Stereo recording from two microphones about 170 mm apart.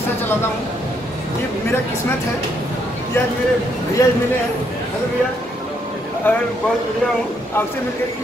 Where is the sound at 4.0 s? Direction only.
20° left (ahead or behind).